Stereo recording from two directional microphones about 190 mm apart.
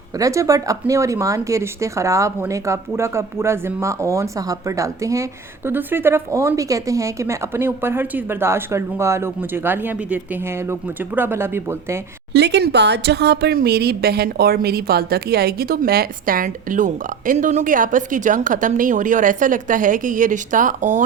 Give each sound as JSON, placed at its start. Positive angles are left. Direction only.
{"t": 0.2, "sound": "speech", "side_deg": -15}
{"t": 12.3, "sound": "speech", "side_deg": -65}